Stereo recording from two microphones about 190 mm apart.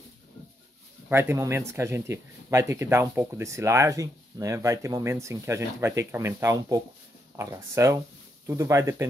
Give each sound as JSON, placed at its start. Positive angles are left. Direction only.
{"t": 1.0, "sound": "a man's voice", "side_deg": -10}